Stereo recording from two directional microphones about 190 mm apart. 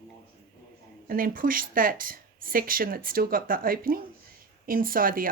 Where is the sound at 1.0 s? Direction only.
50° right (ahead or behind).